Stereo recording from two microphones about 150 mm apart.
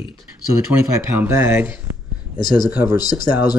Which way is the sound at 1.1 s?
15° right (ahead or behind).